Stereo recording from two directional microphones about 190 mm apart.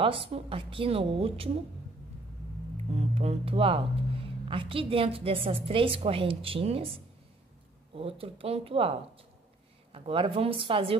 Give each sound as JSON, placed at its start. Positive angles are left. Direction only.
{"t": 0.0, "sound": "a woman's voice", "side_deg": -30}
{"t": 2.9, "sound": "a woman's voice", "side_deg": -35}
{"t": 7.9, "sound": "a woman's voice", "side_deg": -30}
{"t": 9.9, "sound": "a woman's voice", "side_deg": -30}